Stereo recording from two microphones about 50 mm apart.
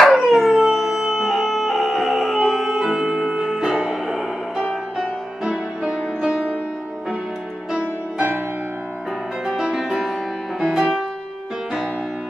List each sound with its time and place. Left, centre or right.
0.1 s howl: centre
7.7 s music: right
9.5 s music: centre